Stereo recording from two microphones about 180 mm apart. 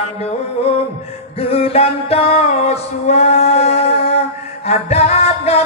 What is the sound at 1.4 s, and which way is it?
Music, 35° left (ahead or behind).